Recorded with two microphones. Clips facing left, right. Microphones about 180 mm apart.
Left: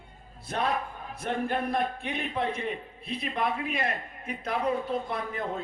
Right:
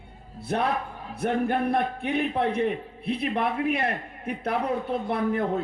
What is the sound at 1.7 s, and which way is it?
A man's voice, 65° right (ahead or behind).